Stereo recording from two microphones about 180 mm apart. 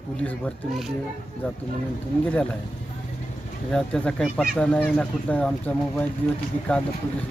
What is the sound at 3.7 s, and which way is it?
Speech, 5° left (ahead or behind).